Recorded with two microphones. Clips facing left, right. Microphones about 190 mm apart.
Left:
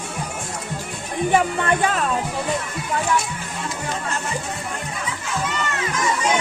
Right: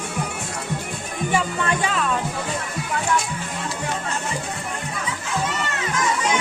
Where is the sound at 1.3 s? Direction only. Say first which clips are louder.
Left 3 dB; 50° left (ahead or behind).